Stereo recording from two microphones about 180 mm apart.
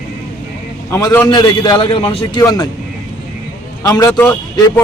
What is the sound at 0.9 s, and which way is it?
A man's voice, 20° left (ahead or behind).